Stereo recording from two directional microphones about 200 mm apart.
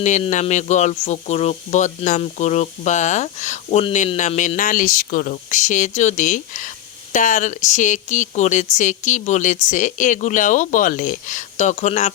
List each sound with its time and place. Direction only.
0.0 s speech: 35° left (ahead or behind)